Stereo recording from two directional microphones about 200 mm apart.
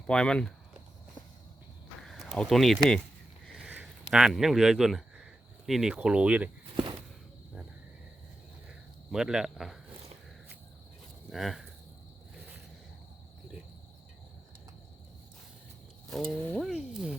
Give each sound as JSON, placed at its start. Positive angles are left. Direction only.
{"t": 0.1, "sound": "speech", "side_deg": 5}
{"t": 2.0, "sound": "speech", "side_deg": 0}
{"t": 3.4, "sound": "a sound", "side_deg": -5}
{"t": 6.7, "sound": "walk", "side_deg": -25}
{"t": 9.1, "sound": "speech", "side_deg": 0}
{"t": 11.3, "sound": "speech", "side_deg": 0}
{"t": 16.0, "sound": "mechanisms", "side_deg": 5}